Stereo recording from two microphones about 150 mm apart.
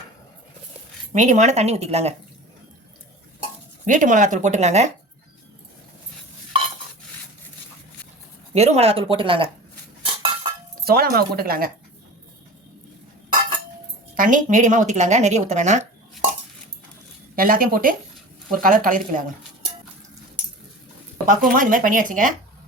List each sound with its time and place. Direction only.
1.1 s speech: 55° right (ahead or behind)
3.8 s a woman's voice: 60° right (ahead or behind)
8.5 s speech: 45° right (ahead or behind)
10.8 s speech: 90° right
14.2 s speech: 60° right (ahead or behind)
17.3 s a woman's voice: 70° right (ahead or behind)
21.2 s a woman's voice: 65° right (ahead or behind)